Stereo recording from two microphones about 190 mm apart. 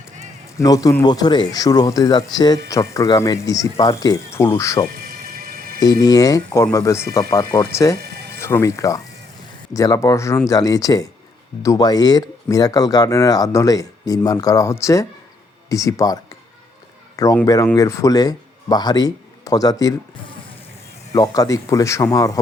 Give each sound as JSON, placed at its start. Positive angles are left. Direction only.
{"t": 0.5, "sound": "speech", "side_deg": 20}
{"t": 5.0, "sound": "a sound", "side_deg": -50}
{"t": 5.8, "sound": "speech", "side_deg": 20}
{"t": 7.9, "sound": "music", "side_deg": -55}
{"t": 8.4, "sound": "speech", "side_deg": 15}
{"t": 17.4, "sound": "speech", "side_deg": 20}